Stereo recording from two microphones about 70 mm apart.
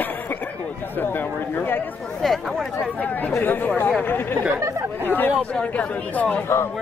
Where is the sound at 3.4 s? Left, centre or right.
Left.